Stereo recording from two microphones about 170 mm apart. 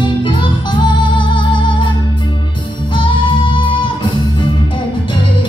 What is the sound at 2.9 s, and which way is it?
Music, 30° left (ahead or behind).